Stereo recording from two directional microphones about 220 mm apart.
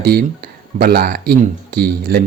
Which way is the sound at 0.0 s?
45° right (ahead or behind).